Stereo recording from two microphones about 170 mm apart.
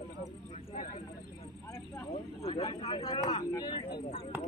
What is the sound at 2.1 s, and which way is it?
Speech, 35° left (ahead or behind).